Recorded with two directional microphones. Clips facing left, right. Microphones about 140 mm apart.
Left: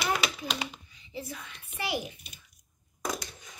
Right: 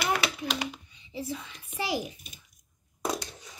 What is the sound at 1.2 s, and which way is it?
Speech, 30° right (ahead or behind).